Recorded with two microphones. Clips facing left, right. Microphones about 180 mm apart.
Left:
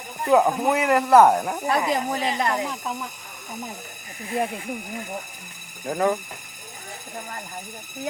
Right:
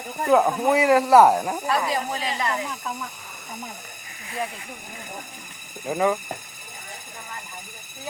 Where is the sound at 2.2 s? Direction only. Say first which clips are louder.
Left 3 dB; 50° left (ahead or behind).